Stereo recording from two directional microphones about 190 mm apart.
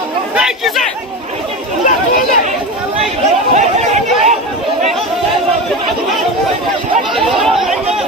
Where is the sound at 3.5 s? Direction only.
40° right (ahead or behind).